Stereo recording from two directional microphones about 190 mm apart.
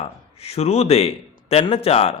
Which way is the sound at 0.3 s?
30° left (ahead or behind).